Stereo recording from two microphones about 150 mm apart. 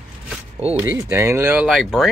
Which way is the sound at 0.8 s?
15° right (ahead or behind).